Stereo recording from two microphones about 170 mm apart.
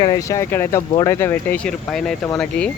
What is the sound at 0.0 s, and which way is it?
Speech, 20° left (ahead or behind).